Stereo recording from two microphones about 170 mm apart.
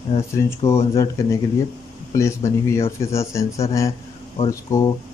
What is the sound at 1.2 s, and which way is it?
Speech, 15° left (ahead or behind).